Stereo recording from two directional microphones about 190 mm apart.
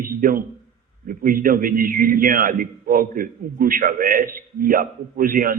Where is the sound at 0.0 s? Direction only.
50° right (ahead or behind).